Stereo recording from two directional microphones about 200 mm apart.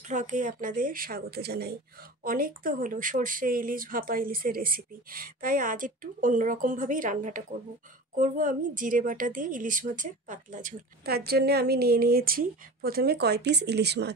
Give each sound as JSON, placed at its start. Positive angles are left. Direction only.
{"t": 0.0, "sound": "a woman's voice", "side_deg": -40}